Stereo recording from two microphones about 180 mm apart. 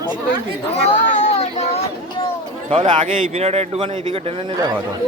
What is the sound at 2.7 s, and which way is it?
Speech, 30° right (ahead or behind).